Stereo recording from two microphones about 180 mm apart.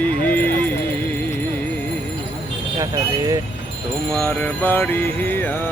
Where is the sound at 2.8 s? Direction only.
20° right (ahead or behind).